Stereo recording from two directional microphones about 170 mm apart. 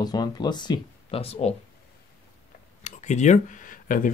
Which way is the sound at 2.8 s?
45° left (ahead or behind).